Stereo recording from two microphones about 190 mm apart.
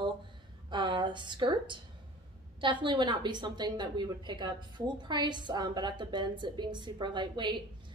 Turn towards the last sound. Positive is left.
turn(degrees=-25)  # may be behind; listen again after turning